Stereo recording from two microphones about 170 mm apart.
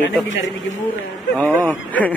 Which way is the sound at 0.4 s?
90° left.